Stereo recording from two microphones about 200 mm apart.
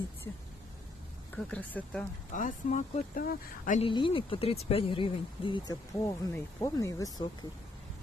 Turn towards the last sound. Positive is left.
turn(degrees=20)  # may be behind; listen again after turning